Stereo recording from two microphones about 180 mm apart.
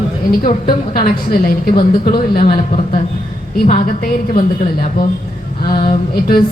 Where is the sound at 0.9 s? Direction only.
55° left (ahead or behind).